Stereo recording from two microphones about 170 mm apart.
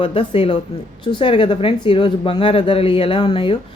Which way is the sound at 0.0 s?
30° left (ahead or behind).